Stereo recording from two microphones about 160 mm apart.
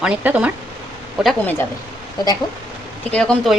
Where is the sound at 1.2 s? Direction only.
5° left (ahead or behind).